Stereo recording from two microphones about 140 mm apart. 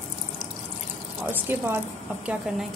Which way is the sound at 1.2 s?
15° right (ahead or behind).